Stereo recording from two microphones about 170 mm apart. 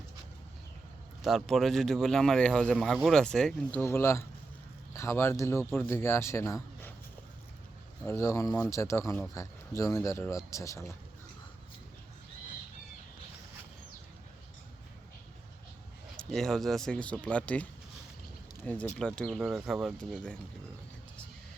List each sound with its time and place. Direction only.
1.2 s a man's voice: centre (ahead or behind); by 6.9 s 15° left (ahead or behind)
8.0 s a man's voice: 15° left (ahead or behind)
16.1 s speech: centre (ahead or behind)